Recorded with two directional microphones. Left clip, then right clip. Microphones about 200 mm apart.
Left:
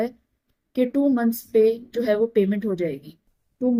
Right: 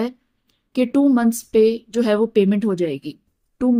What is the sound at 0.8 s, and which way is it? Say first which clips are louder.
Speech: right 4 dB; 50° right (ahead or behind).